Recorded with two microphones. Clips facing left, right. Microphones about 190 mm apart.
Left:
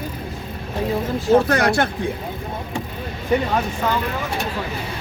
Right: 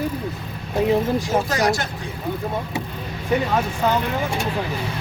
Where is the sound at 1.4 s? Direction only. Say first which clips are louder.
Left 3 dB; 60° left (ahead or behind).